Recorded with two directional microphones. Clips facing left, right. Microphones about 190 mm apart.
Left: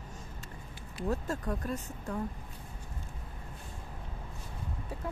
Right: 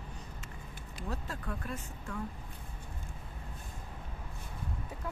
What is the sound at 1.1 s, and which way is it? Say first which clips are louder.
Speech: left 7 dB; 45° left (ahead or behind).